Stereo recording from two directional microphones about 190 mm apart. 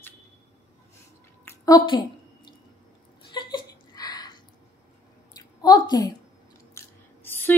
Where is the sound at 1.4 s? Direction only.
20° left (ahead or behind).